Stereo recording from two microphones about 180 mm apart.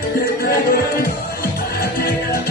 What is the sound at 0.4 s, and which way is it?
Music, 55° left (ahead or behind).